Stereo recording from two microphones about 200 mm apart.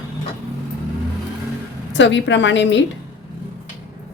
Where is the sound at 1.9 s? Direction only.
65° left (ahead or behind).